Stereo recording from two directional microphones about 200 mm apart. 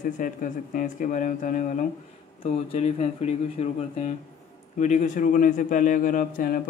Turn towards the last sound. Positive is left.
turn(degrees=45)  # may be behind; listen again after turning